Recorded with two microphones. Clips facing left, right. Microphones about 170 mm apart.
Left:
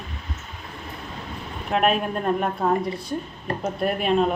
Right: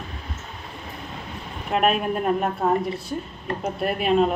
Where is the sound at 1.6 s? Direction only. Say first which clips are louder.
Even; centre (ahead or behind).